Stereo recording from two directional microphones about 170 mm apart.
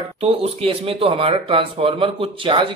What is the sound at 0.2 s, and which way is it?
Speech, 35° right (ahead or behind).